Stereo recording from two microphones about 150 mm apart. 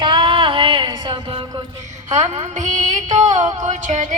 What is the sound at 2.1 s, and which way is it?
Music, 50° right (ahead or behind).